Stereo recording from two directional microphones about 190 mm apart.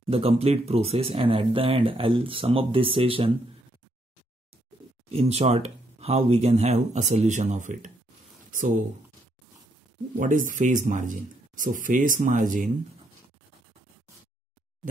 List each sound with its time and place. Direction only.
0.0 s speech: 30° right (ahead or behind)
5.1 s speech: 35° right (ahead or behind)
10.1 s speech: 45° right (ahead or behind)